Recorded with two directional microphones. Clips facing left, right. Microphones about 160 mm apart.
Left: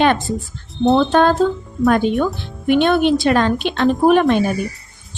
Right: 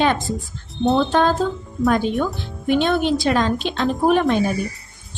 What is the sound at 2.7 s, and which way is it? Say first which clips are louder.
A woman's voice: left 4 dB; 65° left (ahead or behind).